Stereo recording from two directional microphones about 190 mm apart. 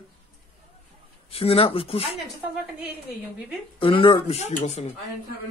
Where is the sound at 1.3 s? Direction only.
30° left (ahead or behind).